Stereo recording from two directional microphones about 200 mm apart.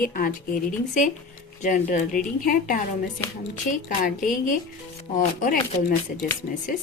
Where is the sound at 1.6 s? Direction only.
40° left (ahead or behind).